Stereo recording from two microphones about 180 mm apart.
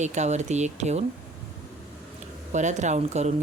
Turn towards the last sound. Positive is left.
turn(degrees=-40)  # may be behind; listen again after turning